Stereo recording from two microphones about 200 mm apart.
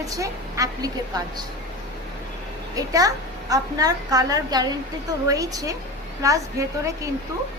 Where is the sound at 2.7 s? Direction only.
15° right (ahead or behind).